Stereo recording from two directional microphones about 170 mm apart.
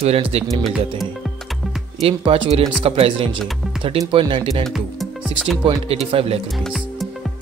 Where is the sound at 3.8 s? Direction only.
35° right (ahead or behind).